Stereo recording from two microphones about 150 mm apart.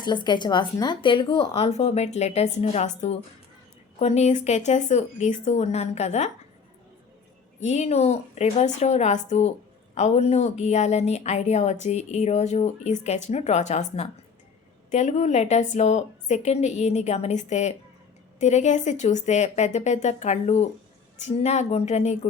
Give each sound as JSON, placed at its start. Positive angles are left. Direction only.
{"t": 0.0, "sound": "a woman's voice", "side_deg": 30}
{"t": 7.6, "sound": "a woman's voice", "side_deg": 50}